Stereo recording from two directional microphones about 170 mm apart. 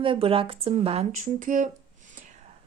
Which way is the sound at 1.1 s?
50° right (ahead or behind).